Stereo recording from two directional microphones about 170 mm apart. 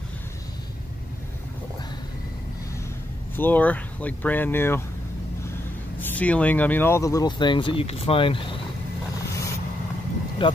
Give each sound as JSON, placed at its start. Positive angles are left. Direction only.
{"t": 3.3, "sound": "speech", "side_deg": 10}
{"t": 5.9, "sound": "speech", "side_deg": 10}
{"t": 10.4, "sound": "speech", "side_deg": 30}